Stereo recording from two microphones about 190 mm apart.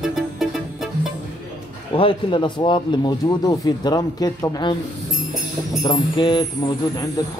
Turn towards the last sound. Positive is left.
turn(degrees=25)  # may be behind; listen again after turning